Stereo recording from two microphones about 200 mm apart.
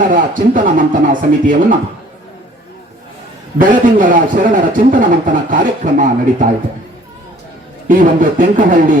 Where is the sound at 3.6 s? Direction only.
40° right (ahead or behind).